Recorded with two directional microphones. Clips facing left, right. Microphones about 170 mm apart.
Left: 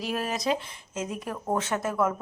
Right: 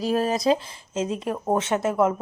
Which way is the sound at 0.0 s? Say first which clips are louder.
Right 7 dB; 35° right (ahead or behind).